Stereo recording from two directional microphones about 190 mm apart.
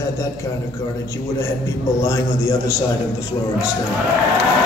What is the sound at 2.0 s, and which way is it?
Speech, 15° left (ahead or behind).